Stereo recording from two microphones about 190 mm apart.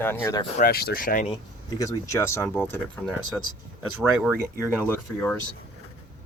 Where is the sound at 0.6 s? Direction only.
55° left (ahead or behind).